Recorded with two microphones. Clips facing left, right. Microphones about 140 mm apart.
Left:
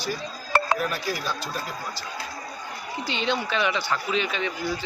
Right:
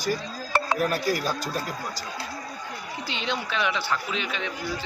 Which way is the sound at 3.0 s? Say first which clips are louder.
Left 4 dB; centre (ahead or behind).